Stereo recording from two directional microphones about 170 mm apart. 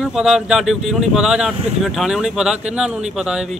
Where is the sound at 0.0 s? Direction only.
5° right (ahead or behind).